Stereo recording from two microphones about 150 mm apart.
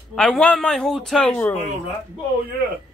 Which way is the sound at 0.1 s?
5° left (ahead or behind).